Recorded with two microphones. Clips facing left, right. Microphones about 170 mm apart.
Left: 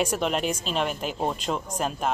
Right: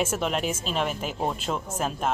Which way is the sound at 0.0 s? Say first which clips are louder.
Left 1 dB; centre (ahead or behind).